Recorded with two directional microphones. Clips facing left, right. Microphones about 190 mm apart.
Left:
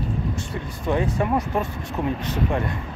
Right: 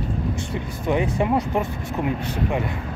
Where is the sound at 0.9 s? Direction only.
15° right (ahead or behind).